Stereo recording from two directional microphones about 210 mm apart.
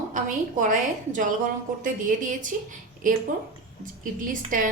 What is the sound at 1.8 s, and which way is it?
A woman's voice, 40° right (ahead or behind).